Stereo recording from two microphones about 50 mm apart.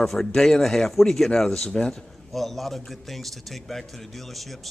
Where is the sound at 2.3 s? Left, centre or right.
Centre.